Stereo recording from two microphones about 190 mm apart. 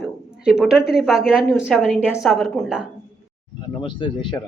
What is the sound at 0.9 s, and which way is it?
A woman's voice, centre (ahead or behind).